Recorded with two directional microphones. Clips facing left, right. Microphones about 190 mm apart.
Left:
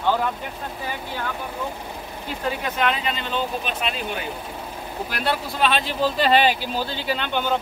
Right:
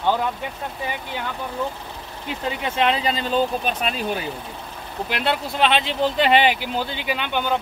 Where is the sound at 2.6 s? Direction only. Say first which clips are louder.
Right 5 dB; 30° right (ahead or behind).